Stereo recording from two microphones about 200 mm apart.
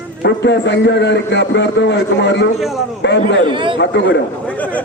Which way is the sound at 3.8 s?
60° left (ahead or behind).